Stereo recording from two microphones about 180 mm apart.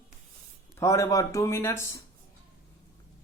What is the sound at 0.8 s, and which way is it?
A man's voice, 15° left (ahead or behind).